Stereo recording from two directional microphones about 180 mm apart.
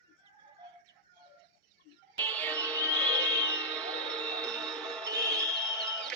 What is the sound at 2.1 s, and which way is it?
Music, 10° left (ahead or behind).